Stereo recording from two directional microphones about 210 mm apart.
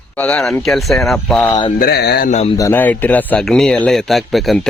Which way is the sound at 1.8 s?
50° left (ahead or behind).